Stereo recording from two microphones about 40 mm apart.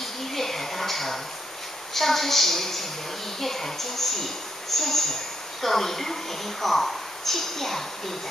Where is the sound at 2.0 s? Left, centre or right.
Centre.